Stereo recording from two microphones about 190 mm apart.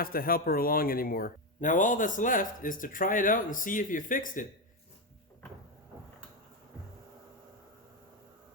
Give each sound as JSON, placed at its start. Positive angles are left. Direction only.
{"t": 0.0, "sound": "speech", "side_deg": 50}